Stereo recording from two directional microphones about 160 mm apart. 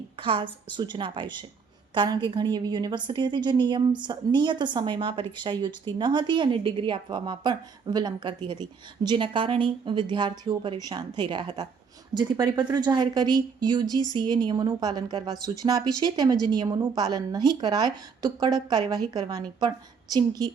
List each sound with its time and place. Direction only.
0.2 s a woman's voice: 30° right (ahead or behind)